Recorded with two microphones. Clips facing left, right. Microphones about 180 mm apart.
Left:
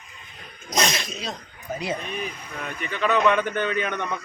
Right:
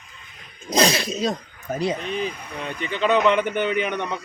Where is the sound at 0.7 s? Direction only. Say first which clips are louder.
Right 6 dB; 30° right (ahead or behind).